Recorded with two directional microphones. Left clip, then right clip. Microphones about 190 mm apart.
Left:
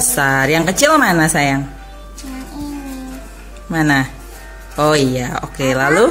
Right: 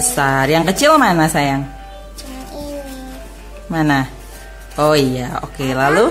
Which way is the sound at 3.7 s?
10° right (ahead or behind).